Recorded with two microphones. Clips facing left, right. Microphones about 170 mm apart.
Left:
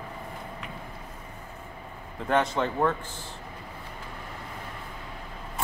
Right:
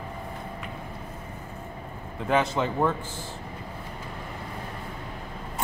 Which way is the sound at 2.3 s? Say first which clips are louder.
Right 1 dB; 5° right (ahead or behind).